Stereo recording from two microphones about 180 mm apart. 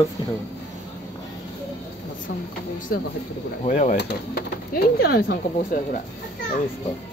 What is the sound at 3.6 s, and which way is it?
Speech, 40° left (ahead or behind).